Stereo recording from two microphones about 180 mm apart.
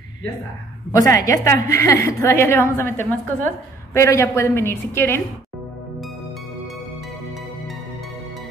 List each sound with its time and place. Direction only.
0.9 s a woman's voice: 20° left (ahead or behind)